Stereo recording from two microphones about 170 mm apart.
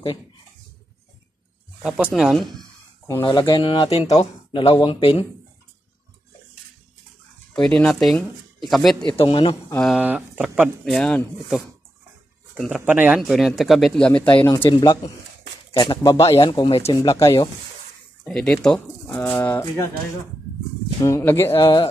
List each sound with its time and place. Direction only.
1.8 s speech: 5° right (ahead or behind)
3.1 s speech: 20° left (ahead or behind)
7.5 s speech: 5° left (ahead or behind)
9.0 s speech: 30° left (ahead or behind)
9.8 s speech: centre (ahead or behind)
11.0 s speech: 5° left (ahead or behind)
12.7 s speech: 10° right (ahead or behind)
14.7 s speech: 25° left (ahead or behind)
18.2 s speech: 5° left (ahead or behind)
21.0 s speech: 15° left (ahead or behind)
21.5 s speech: 30° left (ahead or behind)